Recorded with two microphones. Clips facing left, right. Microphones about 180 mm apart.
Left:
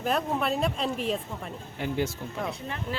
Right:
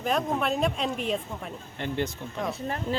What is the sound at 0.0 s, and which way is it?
Speech, centre (ahead or behind).